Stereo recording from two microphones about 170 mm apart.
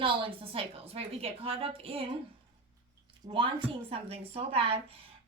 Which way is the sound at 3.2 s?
30° right (ahead or behind).